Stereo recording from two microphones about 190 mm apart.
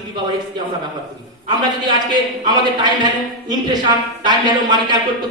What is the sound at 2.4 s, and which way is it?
A man's voice, 20° right (ahead or behind).